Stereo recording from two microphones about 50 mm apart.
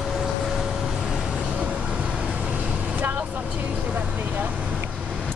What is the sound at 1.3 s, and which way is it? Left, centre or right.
Vehicle, right.